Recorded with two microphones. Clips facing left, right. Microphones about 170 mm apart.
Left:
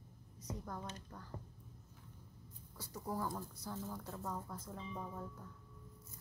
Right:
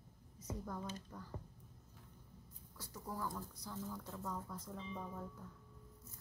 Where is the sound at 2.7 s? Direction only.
10° left (ahead or behind).